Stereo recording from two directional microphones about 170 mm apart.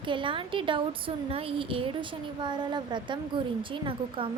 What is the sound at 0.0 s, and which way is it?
A woman's voice, 30° right (ahead or behind).